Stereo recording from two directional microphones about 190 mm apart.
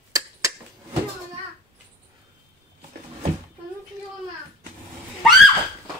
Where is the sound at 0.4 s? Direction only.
15° right (ahead or behind).